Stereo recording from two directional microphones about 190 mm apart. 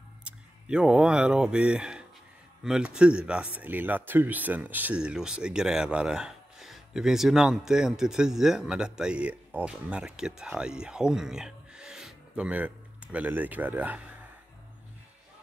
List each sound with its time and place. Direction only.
0.2 s speech: 5° right (ahead or behind)